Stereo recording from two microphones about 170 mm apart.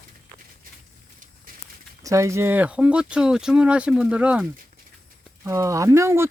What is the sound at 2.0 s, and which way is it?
Speech, 15° right (ahead or behind).